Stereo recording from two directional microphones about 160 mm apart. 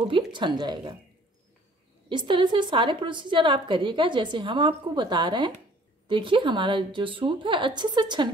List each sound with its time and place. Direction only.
0.3 s a woman's voice: 30° right (ahead or behind)
2.0 s a woman's voice: 30° right (ahead or behind)